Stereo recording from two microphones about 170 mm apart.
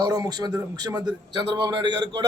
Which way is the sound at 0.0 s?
20° right (ahead or behind).